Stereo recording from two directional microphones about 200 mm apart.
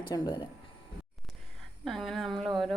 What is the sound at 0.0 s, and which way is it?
Speech, 20° left (ahead or behind).